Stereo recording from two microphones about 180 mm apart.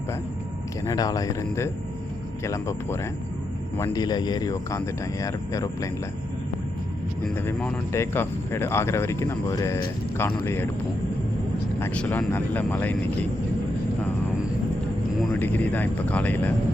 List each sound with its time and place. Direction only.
0.9 s a man's voice: 20° left (ahead or behind)
7.3 s speech: 10° left (ahead or behind)
11.8 s speech: 10° left (ahead or behind)
15.3 s speech: 10° left (ahead or behind)